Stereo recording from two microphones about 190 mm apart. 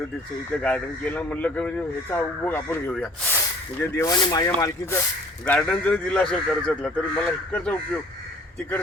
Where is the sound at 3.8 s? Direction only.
15° left (ahead or behind).